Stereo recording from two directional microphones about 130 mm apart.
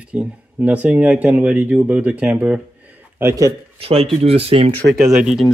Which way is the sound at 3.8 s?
50° right (ahead or behind).